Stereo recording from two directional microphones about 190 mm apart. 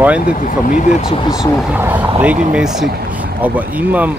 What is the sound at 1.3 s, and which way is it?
Speech, 5° right (ahead or behind).